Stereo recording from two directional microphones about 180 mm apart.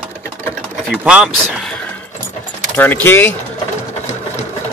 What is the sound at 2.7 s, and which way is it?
Speech, 10° left (ahead or behind).